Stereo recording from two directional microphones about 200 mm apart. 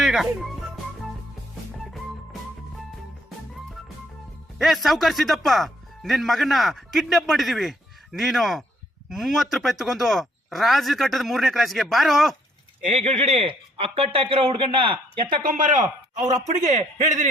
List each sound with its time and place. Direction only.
0.0 s speech: centre (ahead or behind)
1.9 s music: centre (ahead or behind)
4.5 s speech: centre (ahead or behind)
12.8 s a man's voice: 35° right (ahead or behind)
15.4 s a man's voice: 40° right (ahead or behind)